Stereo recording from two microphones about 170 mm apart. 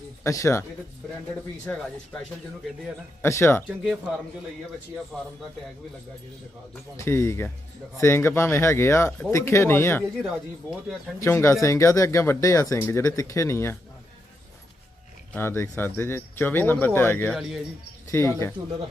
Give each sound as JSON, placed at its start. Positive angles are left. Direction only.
{"t": 0.2, "sound": "speech", "side_deg": 15}
{"t": 1.6, "sound": "speech", "side_deg": 5}
{"t": 3.2, "sound": "speech", "side_deg": 15}
{"t": 5.1, "sound": "speech", "side_deg": 0}
{"t": 6.9, "sound": "speech", "side_deg": 15}
{"t": 10.2, "sound": "speech", "side_deg": 0}
{"t": 11.2, "sound": "speech", "side_deg": 15}
{"t": 15.3, "sound": "speech", "side_deg": 15}
{"t": 17.3, "sound": "speech", "side_deg": 0}
{"t": 18.1, "sound": "speech", "side_deg": 15}